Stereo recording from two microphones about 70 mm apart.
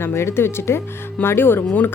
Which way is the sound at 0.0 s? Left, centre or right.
Left.